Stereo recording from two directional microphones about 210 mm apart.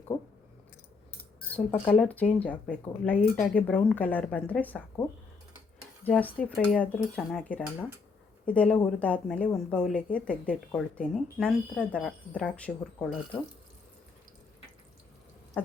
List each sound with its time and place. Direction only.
0.1 s speech: 20° left (ahead or behind)
1.4 s speech: 10° left (ahead or behind)
6.1 s a woman's voice: 5° left (ahead or behind)